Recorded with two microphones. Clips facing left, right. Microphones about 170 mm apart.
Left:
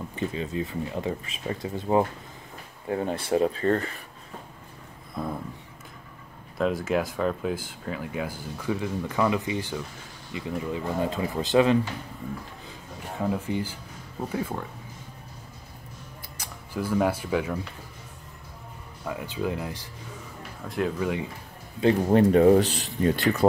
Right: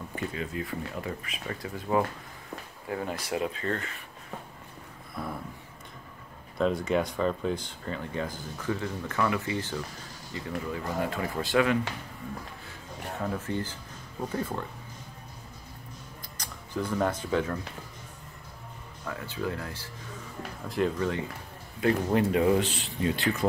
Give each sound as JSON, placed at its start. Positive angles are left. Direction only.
{"t": 0.1, "sound": "speech", "side_deg": 25}
{"t": 6.6, "sound": "speech", "side_deg": 5}
{"t": 13.2, "sound": "speech", "side_deg": 10}
{"t": 16.3, "sound": "speech", "side_deg": 5}
{"t": 19.0, "sound": "speech", "side_deg": 15}
{"t": 20.6, "sound": "speech", "side_deg": 0}
{"t": 21.8, "sound": "speech", "side_deg": 40}